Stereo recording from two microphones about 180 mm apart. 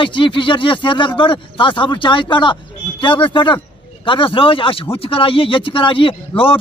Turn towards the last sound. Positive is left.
turn(degrees=30)  # may be behind; listen again after turning